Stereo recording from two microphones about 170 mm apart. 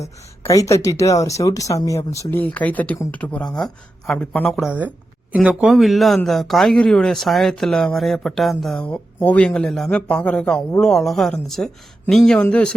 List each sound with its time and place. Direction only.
0.0 s speech: 20° left (ahead or behind)
4.6 s a man's voice: 10° right (ahead or behind); by 12.7 s 10° left (ahead or behind)